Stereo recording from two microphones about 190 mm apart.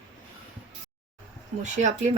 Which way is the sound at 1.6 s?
40° right (ahead or behind).